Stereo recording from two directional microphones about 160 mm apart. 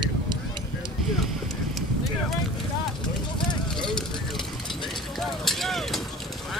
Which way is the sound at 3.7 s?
5° left (ahead or behind).